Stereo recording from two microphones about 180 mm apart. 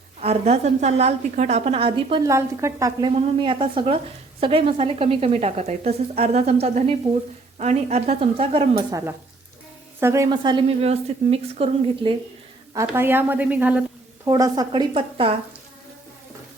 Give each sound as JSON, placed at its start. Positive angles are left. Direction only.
{"t": 0.2, "sound": "a woman's voice", "side_deg": -35}
{"t": 2.2, "sound": "a woman's voice", "side_deg": -15}
{"t": 3.1, "sound": "a woman's voice", "side_deg": -30}
{"t": 8.9, "sound": "a woman's voice", "side_deg": -15}
{"t": 12.7, "sound": "a woman's voice", "side_deg": -10}
{"t": 14.3, "sound": "speech", "side_deg": -20}